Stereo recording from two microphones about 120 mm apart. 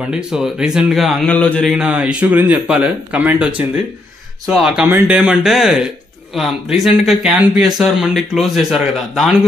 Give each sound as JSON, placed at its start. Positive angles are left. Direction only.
{"t": 0.1, "sound": "speech", "side_deg": -5}
{"t": 1.3, "sound": "mantra", "side_deg": 10}
{"t": 1.7, "sound": "speech", "side_deg": -5}